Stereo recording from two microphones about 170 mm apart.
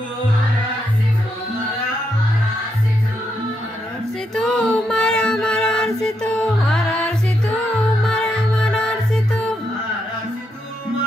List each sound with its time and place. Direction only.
4.4 s music: 5° left (ahead or behind)